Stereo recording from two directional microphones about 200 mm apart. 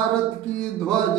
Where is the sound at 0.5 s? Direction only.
5° left (ahead or behind).